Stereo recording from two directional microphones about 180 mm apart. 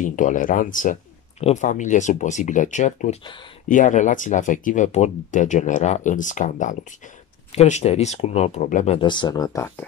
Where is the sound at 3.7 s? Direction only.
45° left (ahead or behind).